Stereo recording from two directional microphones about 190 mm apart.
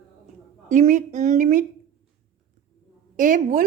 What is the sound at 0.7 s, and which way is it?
Speech, 40° right (ahead or behind).